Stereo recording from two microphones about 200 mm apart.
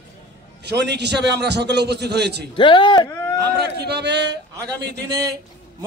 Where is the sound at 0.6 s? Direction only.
55° right (ahead or behind).